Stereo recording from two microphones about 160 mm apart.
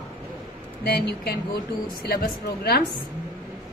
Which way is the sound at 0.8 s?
75° left (ahead or behind).